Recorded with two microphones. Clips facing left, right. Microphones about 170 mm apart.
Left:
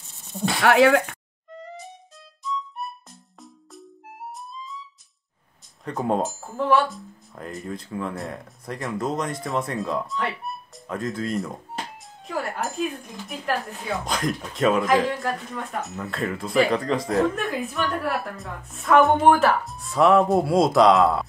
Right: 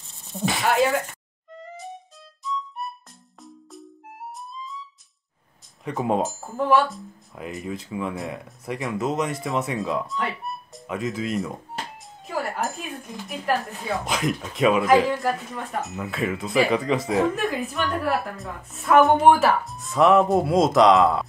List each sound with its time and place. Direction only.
0.3 s speech: centre (ahead or behind)
0.6 s speech: 75° left (ahead or behind)
1.6 s music: centre (ahead or behind)
5.9 s speech: 5° right (ahead or behind)